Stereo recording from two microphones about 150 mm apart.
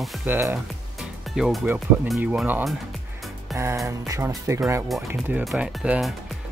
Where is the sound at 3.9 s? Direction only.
20° right (ahead or behind).